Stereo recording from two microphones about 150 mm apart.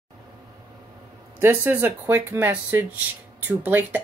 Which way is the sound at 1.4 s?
15° right (ahead or behind).